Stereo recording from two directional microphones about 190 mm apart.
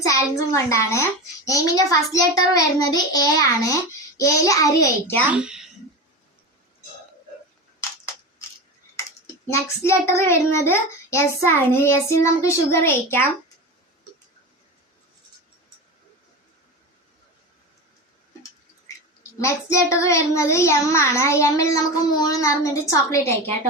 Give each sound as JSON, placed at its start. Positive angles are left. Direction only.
{"t": 0.0, "sound": "a child's voice", "side_deg": 15}
{"t": 1.5, "sound": "child singing", "side_deg": 15}
{"t": 2.5, "sound": "a child's voice", "side_deg": 20}
{"t": 4.2, "sound": "child singing", "side_deg": 15}
{"t": 5.2, "sound": "a child's voice", "side_deg": -5}
{"t": 9.6, "sound": "child singing", "side_deg": 15}
{"t": 19.4, "sound": "child singing", "side_deg": 15}